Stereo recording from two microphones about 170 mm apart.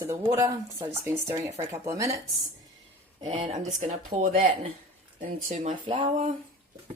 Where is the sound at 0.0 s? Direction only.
20° right (ahead or behind).